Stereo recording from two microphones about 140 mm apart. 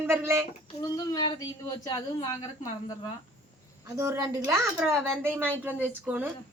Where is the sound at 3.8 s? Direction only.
20° right (ahead or behind).